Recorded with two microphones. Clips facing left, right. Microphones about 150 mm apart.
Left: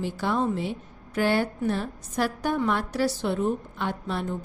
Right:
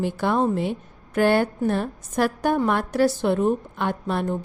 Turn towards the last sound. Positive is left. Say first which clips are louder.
# right 5 dB
turn(degrees=-55)  # may be behind; listen again after turning